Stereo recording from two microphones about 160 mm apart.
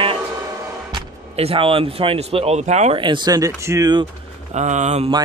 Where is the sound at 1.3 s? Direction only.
35° right (ahead or behind).